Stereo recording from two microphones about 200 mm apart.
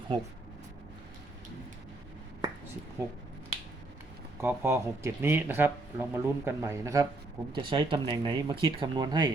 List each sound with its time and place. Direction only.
3.0 s speech: 15° right (ahead or behind)
4.4 s speech: 10° right (ahead or behind)